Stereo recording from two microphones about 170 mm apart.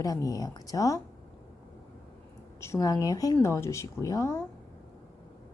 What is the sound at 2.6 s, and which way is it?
Speech, 15° left (ahead or behind).